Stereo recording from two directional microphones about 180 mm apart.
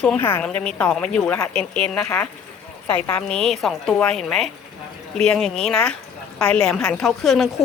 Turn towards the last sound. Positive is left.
turn(degrees=0)  # may be behind; listen again after turning